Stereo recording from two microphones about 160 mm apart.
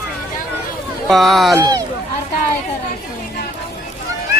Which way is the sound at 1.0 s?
Centre (ahead or behind).